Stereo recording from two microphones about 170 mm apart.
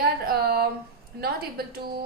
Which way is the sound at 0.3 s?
70° right (ahead or behind).